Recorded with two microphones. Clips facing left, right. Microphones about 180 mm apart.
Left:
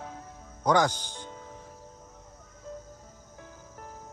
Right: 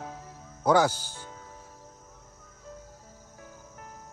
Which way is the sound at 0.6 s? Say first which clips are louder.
Right 2 dB; 5° right (ahead or behind).